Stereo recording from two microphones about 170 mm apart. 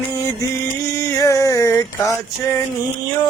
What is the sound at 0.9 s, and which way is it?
Male singing, 15° left (ahead or behind).